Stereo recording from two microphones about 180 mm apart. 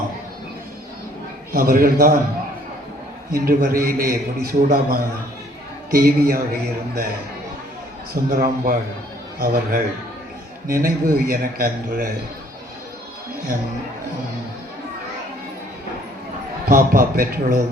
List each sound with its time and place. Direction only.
1.5 s a man's voice: 55° right (ahead or behind)
3.3 s a man's voice: 55° right (ahead or behind)
8.1 s a man's voice: 55° right (ahead or behind)
16.6 s a man's voice: 55° right (ahead or behind)